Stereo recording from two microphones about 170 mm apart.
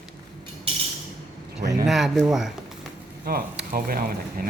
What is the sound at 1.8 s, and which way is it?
Speech, centre (ahead or behind).